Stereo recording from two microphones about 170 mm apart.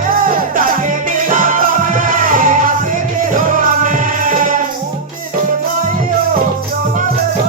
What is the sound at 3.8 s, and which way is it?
Music, 50° right (ahead or behind).